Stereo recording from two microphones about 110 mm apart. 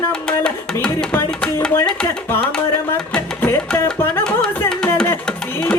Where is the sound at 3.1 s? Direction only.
20° left (ahead or behind).